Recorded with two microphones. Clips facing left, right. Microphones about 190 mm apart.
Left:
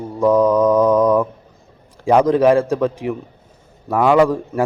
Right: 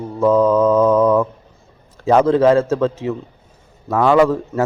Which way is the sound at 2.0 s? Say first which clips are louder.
Even; 15° left (ahead or behind).